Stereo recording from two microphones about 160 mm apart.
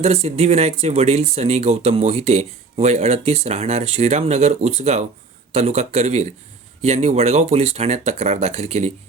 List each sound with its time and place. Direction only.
0.0 s speech: 40° right (ahead or behind)